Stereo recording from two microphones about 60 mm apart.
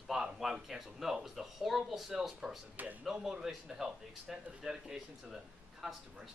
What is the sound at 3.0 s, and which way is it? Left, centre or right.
Speech, centre.